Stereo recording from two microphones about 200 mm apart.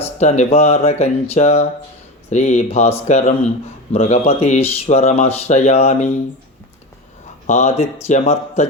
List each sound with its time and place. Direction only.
0.0 s speech: 35° left (ahead or behind)
7.4 s speech: 35° left (ahead or behind)